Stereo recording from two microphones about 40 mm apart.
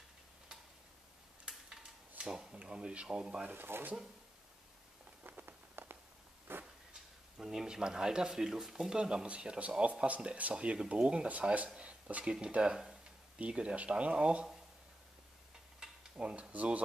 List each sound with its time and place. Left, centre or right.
1.8 s dishes: right
2.5 s speech: right
3.7 s speech: right
5.4 s rain on surface: right
6.5 s a sound: right
6.9 s speech: centre
15.8 s stir: centre
16.2 s speech: right